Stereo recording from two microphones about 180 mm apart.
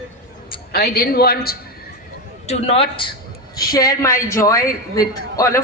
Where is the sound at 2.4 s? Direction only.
35° left (ahead or behind).